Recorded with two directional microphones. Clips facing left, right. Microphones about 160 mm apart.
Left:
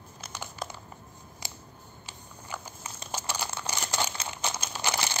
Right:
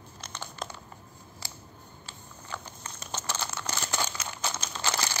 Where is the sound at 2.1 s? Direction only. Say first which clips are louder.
Left 1 dB; 10° left (ahead or behind).